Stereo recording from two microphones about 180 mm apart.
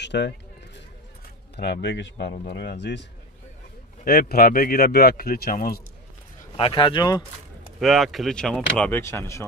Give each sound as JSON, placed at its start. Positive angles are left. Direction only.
{"t": 0.0, "sound": "speech", "side_deg": 75}
{"t": 1.6, "sound": "speech", "side_deg": 70}
{"t": 4.0, "sound": "speech", "side_deg": 55}
{"t": 6.5, "sound": "speech", "side_deg": 30}
{"t": 7.8, "sound": "speech", "side_deg": 0}